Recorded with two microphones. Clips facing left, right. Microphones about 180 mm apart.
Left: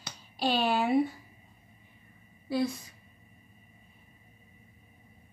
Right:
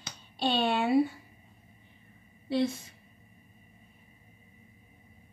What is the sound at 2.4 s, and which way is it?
Speech, 25° right (ahead or behind).